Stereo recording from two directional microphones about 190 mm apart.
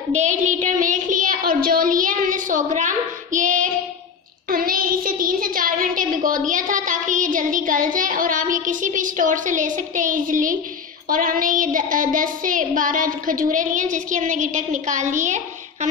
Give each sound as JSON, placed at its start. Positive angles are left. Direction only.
{"t": 0.1, "sound": "child singing", "side_deg": -40}